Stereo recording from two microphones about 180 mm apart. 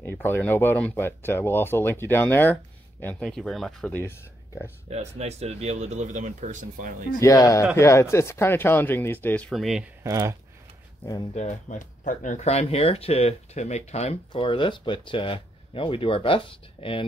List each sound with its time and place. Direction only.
0.0 s speech: 10° left (ahead or behind)
4.8 s speech: 35° right (ahead or behind)
7.2 s speech: 20° left (ahead or behind); by 9.8 s centre (ahead or behind)
10.0 s speech: 15° right (ahead or behind)
11.3 s speech: 45° left (ahead or behind)